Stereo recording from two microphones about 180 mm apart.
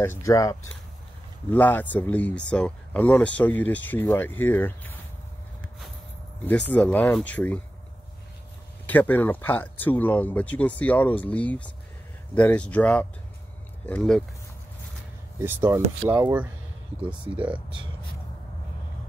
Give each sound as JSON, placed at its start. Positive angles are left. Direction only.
{"t": 0.0, "sound": "speech", "side_deg": 15}
{"t": 6.7, "sound": "speech", "side_deg": 10}
{"t": 8.8, "sound": "speech", "side_deg": 10}
{"t": 15.4, "sound": "speech", "side_deg": -10}